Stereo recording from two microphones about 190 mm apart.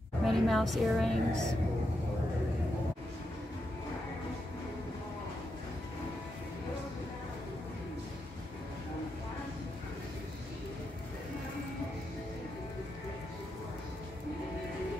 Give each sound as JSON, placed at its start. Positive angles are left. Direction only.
{"t": 0.2, "sound": "a woman's voice", "side_deg": 0}